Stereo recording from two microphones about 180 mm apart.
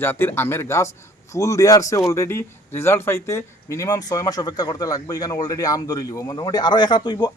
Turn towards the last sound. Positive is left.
turn(degrees=25)  # may be behind; listen again after turning